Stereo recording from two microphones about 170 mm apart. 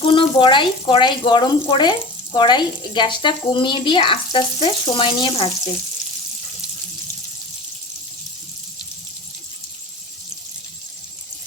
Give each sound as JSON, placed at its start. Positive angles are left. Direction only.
{"t": 0.1, "sound": "speech", "side_deg": 30}